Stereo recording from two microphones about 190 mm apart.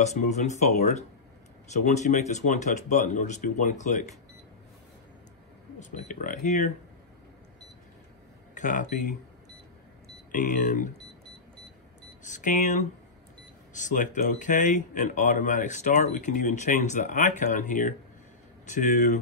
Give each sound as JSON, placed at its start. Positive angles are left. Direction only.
{"t": 0.0, "sound": "speech", "side_deg": 35}
{"t": 5.9, "sound": "speech", "side_deg": 40}
{"t": 8.5, "sound": "speech", "side_deg": 40}
{"t": 10.3, "sound": "speech", "side_deg": 40}
{"t": 12.2, "sound": "speech", "side_deg": 40}